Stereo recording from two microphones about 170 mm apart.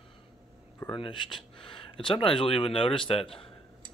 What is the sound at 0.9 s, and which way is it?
Speech, 30° left (ahead or behind).